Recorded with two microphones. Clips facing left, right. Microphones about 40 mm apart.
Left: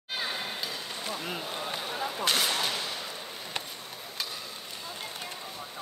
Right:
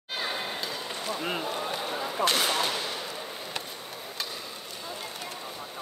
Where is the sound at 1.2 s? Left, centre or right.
Right.